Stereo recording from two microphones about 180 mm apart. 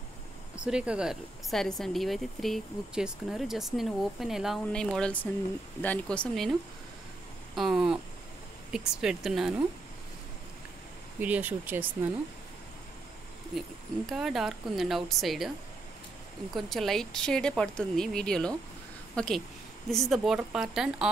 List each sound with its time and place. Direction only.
0.7 s speech: 5° right (ahead or behind)
7.5 s speech: centre (ahead or behind)
11.1 s speech: 10° right (ahead or behind)
13.6 s speech: centre (ahead or behind)
16.5 s speech: centre (ahead or behind)